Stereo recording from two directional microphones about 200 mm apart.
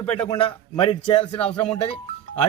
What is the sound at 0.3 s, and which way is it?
Speech, 25° left (ahead or behind).